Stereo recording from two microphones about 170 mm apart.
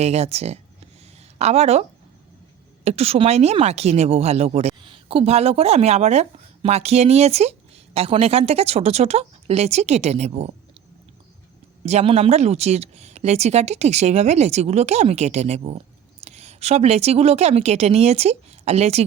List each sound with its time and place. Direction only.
0.0 s speech: 40° right (ahead or behind)
2.8 s speech: 35° right (ahead or behind)
11.9 s speech: 40° right (ahead or behind)